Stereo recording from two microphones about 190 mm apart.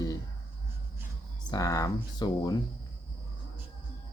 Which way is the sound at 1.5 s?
20° left (ahead or behind).